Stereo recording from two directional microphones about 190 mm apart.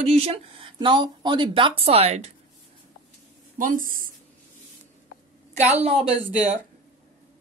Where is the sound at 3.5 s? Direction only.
45° right (ahead or behind).